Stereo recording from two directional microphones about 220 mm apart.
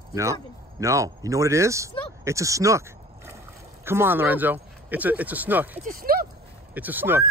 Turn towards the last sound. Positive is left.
turn(degrees=-10)  # may be behind; listen again after turning